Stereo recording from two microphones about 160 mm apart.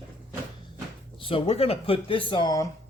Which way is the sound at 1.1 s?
35° left (ahead or behind).